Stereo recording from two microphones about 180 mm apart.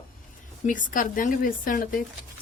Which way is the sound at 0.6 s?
45° left (ahead or behind).